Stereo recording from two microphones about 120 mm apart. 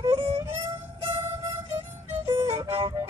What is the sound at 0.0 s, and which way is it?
Music, 60° right (ahead or behind).